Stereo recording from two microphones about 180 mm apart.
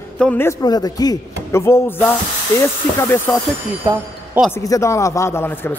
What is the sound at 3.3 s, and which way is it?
Speech, 5° left (ahead or behind).